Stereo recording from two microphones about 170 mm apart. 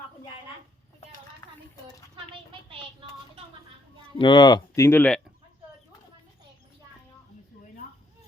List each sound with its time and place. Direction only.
4.2 s speech: 25° left (ahead or behind); by 5.2 s 10° left (ahead or behind)